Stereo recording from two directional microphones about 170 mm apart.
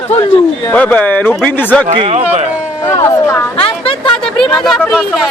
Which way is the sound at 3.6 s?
30° left (ahead or behind).